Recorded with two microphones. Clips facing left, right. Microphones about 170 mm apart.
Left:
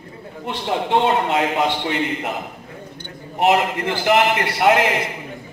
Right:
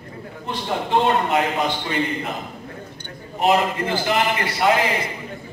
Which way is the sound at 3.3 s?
70° left (ahead or behind).